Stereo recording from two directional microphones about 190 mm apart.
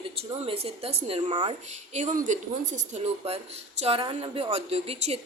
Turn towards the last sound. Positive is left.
turn(degrees=-30)  # may be behind; listen again after turning